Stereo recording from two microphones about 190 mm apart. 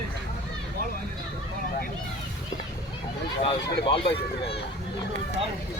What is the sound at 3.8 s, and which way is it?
Speech, 30° left (ahead or behind).